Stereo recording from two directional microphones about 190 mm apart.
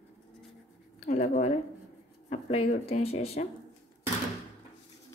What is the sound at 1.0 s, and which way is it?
Speech, 35° left (ahead or behind).